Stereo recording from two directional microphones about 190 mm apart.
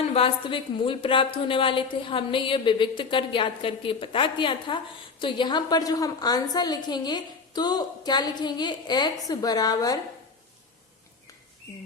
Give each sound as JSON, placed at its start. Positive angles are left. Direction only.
{"t": 0.0, "sound": "a woman's voice", "side_deg": 30}